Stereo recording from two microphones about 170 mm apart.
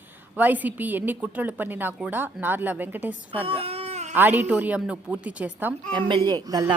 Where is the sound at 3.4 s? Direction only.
35° right (ahead or behind).